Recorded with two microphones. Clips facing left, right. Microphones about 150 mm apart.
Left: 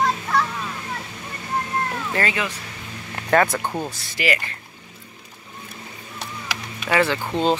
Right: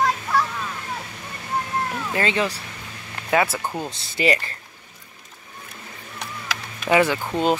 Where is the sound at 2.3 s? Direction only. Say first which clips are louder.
Right 4 dB; 35° right (ahead or behind).